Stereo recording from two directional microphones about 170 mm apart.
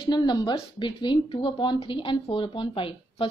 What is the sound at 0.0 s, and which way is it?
A woman's voice, 25° left (ahead or behind).